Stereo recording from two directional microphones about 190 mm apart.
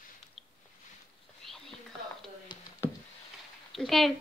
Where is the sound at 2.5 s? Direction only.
25° left (ahead or behind).